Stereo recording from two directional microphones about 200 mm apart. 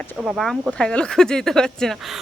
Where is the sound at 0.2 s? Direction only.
Centre (ahead or behind).